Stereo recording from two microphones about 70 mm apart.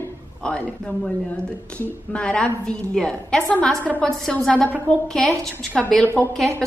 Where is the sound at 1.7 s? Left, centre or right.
Centre.